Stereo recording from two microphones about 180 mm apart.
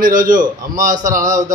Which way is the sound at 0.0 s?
50° right (ahead or behind).